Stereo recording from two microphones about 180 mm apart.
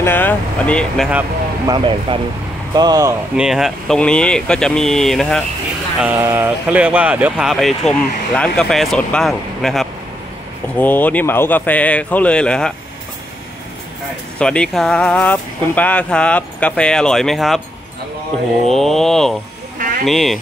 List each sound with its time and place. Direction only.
0.0 s speech: 10° left (ahead or behind)
1.7 s speech: 30° right (ahead or behind)
3.3 s speech: 5° right (ahead or behind)
5.9 s speech: 10° right (ahead or behind); by 12.7 s 5° left (ahead or behind)
14.4 s speech: 5° left (ahead or behind)
18.7 s speech: centre (ahead or behind)